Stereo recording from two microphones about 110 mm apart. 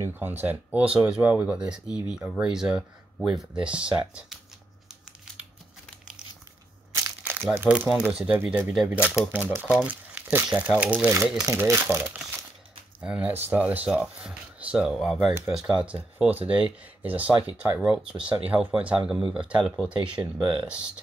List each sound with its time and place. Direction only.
0.0 s speech: 20° right (ahead or behind)
7.5 s speech: 15° right (ahead or behind)
11.4 s speech: 25° right (ahead or behind)
13.0 s speech: 15° right (ahead or behind)